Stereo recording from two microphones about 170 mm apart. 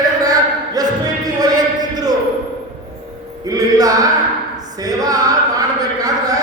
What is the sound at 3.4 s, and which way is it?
Music, 20° right (ahead or behind).